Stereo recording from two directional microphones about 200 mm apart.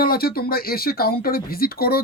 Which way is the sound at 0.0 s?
50° left (ahead or behind).